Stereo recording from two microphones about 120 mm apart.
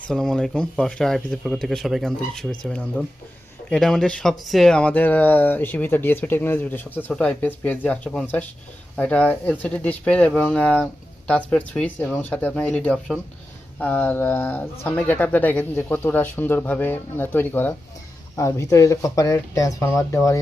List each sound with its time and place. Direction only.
0.1 s speech: 5° left (ahead or behind); by 20.4 s 25° left (ahead or behind)